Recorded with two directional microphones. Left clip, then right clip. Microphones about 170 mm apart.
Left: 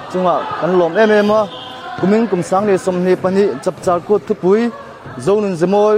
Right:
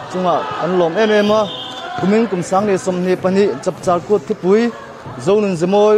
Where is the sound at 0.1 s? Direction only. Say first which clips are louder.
Left 1 dB; 50° left (ahead or behind).